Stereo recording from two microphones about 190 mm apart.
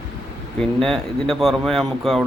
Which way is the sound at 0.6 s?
Centre (ahead or behind).